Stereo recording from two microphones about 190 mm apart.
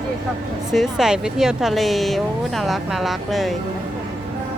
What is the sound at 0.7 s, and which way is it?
A woman's voice, centre (ahead or behind).